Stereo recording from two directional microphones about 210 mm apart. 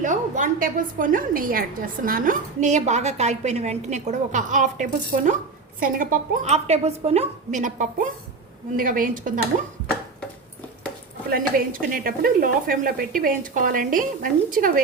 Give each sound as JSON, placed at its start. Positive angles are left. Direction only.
{"t": 0.0, "sound": "a woman's voice", "side_deg": -35}
{"t": 11.3, "sound": "a woman's voice", "side_deg": -40}